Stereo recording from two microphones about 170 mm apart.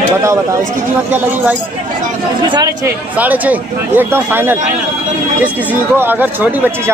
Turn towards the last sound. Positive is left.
turn(degrees=-10)  # may be behind; listen again after turning